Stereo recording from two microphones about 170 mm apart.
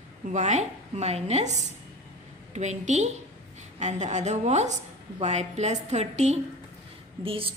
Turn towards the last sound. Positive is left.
turn(degrees=-30)  # may be behind; listen again after turning